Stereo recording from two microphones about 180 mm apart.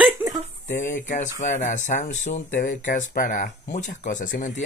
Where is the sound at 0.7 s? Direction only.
45° left (ahead or behind).